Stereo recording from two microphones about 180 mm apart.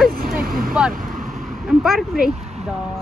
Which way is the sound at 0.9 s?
50° right (ahead or behind).